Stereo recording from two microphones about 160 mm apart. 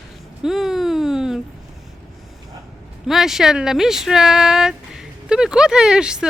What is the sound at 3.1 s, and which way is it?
Speech, centre (ahead or behind).